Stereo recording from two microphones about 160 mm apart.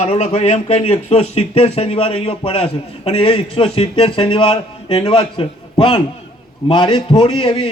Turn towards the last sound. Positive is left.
turn(degrees=35)  # may be behind; listen again after turning